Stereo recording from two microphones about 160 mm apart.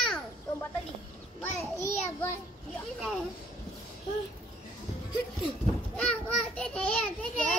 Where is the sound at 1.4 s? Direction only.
15° left (ahead or behind).